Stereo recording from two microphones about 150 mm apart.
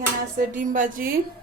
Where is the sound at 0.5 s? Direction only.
60° right (ahead or behind).